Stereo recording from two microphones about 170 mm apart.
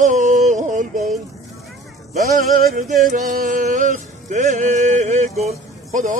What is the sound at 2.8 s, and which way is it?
Music, 50° right (ahead or behind).